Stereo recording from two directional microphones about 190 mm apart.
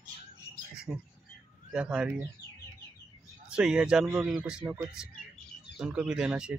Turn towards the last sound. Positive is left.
turn(degrees=-5)  # may be behind; listen again after turning